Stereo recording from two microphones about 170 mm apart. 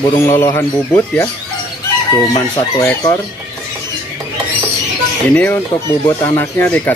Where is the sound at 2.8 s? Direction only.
15° left (ahead or behind).